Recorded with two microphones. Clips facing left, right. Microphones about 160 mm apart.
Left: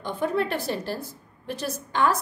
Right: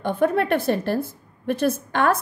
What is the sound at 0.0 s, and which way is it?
Speech, 55° right (ahead or behind).